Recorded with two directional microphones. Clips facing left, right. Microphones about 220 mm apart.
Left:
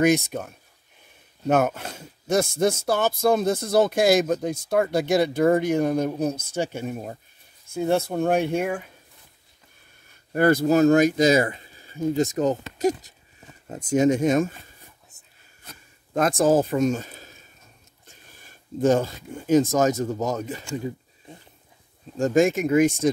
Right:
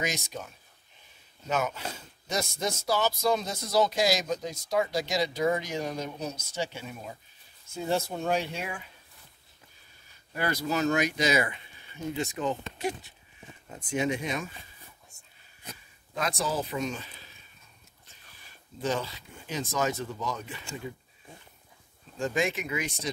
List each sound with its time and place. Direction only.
0.0 s speech: 55° left (ahead or behind)
10.3 s speech: 50° left (ahead or behind)
16.1 s speech: 50° left (ahead or behind)
22.2 s speech: 45° left (ahead or behind)